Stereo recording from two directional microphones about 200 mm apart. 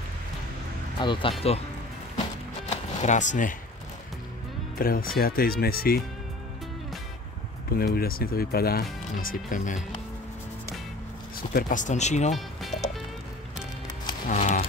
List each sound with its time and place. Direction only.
0.9 s speech: 25° left (ahead or behind)
2.7 s speech: 35° left (ahead or behind)
4.7 s speech: 45° left (ahead or behind)
7.7 s speech: 50° left (ahead or behind)
11.5 s speech: 40° left (ahead or behind)
12.4 s music: centre (ahead or behind)
14.3 s livestock: 40° left (ahead or behind)